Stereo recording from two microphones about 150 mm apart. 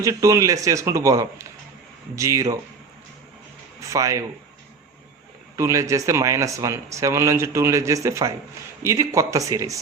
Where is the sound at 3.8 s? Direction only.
20° right (ahead or behind).